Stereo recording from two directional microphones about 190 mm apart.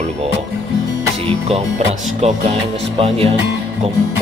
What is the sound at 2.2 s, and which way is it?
Speech, 35° right (ahead or behind).